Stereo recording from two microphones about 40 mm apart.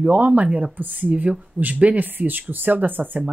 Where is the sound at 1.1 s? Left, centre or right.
Right.